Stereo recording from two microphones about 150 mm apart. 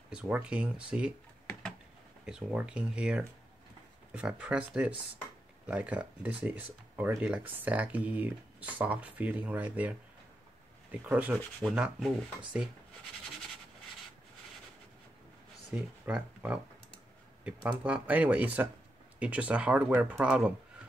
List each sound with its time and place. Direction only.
0.1 s speech: 5° right (ahead or behind)
2.2 s speech: 5° right (ahead or behind)
15.7 s speech: 10° right (ahead or behind)